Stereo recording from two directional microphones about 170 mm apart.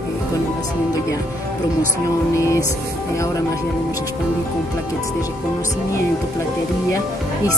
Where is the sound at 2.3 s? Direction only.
15° left (ahead or behind).